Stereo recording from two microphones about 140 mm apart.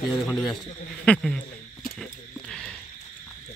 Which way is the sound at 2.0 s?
5° left (ahead or behind).